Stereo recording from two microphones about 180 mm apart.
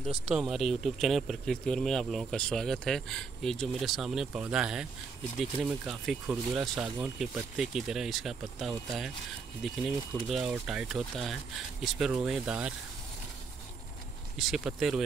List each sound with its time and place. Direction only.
0.3 s speech: 5° right (ahead or behind)
14.4 s speech: centre (ahead or behind)